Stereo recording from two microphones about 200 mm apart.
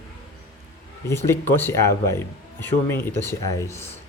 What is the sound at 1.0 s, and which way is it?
Speech, 10° left (ahead or behind).